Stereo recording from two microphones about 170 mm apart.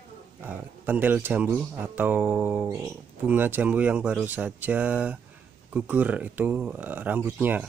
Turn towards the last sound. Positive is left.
turn(degrees=-10)  # may be behind; listen again after turning